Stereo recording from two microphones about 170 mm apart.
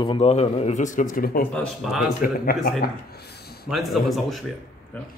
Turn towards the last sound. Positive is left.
turn(degrees=0)  # may be behind; listen again after turning